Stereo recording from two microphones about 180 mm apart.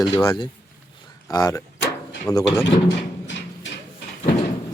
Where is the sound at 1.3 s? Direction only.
20° left (ahead or behind).